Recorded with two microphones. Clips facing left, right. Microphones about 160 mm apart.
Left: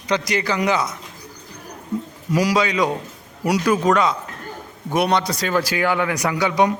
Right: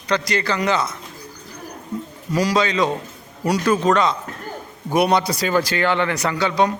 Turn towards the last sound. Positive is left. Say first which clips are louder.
# left 1 dB
turn(degrees=15)  # may be behind; listen again after turning